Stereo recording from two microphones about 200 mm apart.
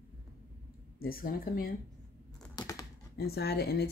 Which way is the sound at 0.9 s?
45° left (ahead or behind).